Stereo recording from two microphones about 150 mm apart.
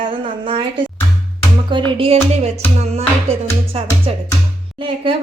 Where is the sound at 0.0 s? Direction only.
35° right (ahead or behind).